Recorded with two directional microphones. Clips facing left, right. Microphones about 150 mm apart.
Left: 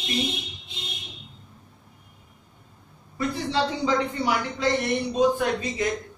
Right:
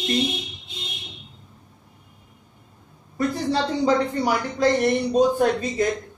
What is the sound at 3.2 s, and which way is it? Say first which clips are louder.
A woman's voice: right 3 dB; 45° right (ahead or behind).